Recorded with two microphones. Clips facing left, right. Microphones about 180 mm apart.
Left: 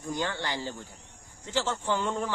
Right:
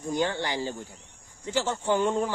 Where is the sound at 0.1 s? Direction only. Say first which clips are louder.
Right 4 dB; 15° right (ahead or behind).